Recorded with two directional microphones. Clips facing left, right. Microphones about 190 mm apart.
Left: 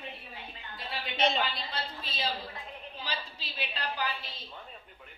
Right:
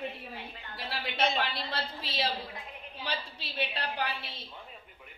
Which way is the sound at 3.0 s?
60° right (ahead or behind).